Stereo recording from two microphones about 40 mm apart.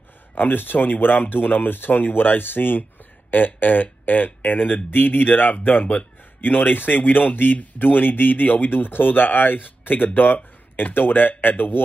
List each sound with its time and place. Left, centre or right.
0.4 s speech: left